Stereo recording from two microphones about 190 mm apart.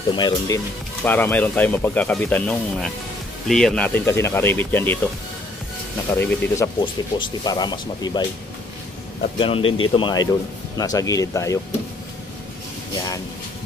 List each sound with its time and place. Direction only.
0.1 s speech: 25° left (ahead or behind)
1.0 s speech: 10° left (ahead or behind)
6.1 s speech: 10° left (ahead or behind)
6.8 s speech: 25° left (ahead or behind)
9.4 s speech: 30° left (ahead or behind)